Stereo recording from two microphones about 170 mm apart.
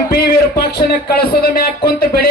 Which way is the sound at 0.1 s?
65° left (ahead or behind).